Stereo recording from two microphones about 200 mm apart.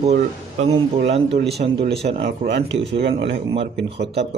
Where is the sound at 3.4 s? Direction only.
25° right (ahead or behind).